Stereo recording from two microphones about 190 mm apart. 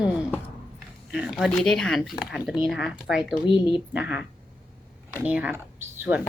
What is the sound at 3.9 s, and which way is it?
Speech, 5° right (ahead or behind).